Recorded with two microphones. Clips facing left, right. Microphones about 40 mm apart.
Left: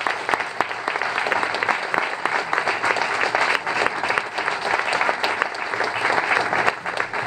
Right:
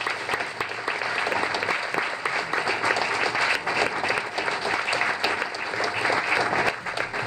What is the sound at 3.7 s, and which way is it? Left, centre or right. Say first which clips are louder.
Applause: left 3 dB; left.